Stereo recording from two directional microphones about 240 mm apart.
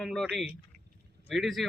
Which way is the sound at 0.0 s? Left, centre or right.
Centre.